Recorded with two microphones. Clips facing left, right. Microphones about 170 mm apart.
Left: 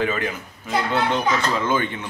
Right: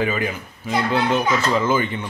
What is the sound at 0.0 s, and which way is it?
A child's voice, 10° right (ahead or behind).